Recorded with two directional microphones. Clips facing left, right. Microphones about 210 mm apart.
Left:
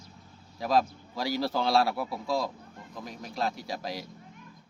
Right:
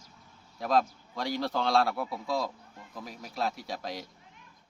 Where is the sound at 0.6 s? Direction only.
Centre (ahead or behind).